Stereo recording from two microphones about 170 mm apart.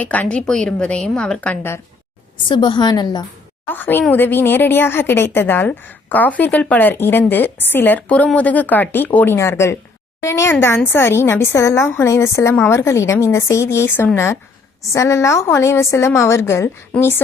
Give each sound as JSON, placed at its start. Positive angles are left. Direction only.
{"t": 0.0, "sound": "a woman's voice", "side_deg": 10}
{"t": 2.5, "sound": "a woman's voice", "side_deg": 25}
{"t": 3.7, "sound": "a woman's voice", "side_deg": 10}